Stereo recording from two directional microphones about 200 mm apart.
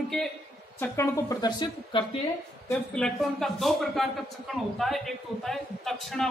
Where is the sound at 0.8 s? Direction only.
15° left (ahead or behind).